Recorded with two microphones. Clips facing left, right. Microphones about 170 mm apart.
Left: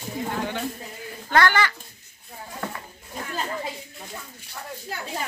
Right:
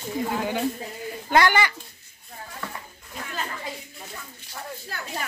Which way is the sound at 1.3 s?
15° right (ahead or behind).